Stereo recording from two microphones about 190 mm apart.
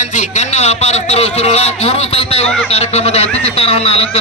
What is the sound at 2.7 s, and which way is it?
A man's voice, 35° left (ahead or behind).